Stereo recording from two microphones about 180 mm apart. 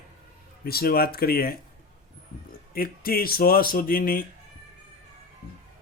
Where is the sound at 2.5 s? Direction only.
55° left (ahead or behind).